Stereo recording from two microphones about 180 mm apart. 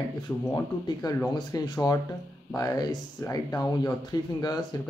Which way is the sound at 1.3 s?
25° left (ahead or behind).